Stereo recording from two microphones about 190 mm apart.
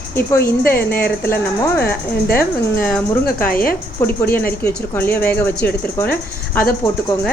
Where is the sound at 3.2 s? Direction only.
50° left (ahead or behind).